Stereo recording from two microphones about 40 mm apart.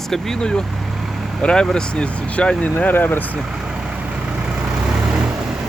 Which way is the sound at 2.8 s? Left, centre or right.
Left.